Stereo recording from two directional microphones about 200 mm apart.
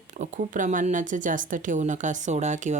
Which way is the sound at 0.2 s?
40° right (ahead or behind).